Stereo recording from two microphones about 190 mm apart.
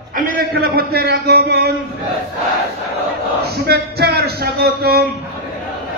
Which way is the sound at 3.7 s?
55° right (ahead or behind).